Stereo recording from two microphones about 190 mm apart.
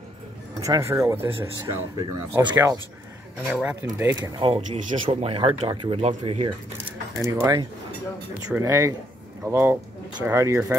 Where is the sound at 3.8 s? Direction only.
15° right (ahead or behind); by 6.5 s 30° right (ahead or behind).